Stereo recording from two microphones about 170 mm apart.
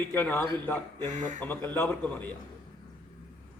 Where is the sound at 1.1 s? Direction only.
45° right (ahead or behind).